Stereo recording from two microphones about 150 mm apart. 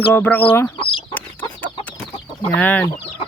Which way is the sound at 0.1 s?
10° left (ahead or behind).